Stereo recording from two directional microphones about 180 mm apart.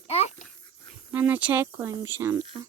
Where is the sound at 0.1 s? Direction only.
35° left (ahead or behind).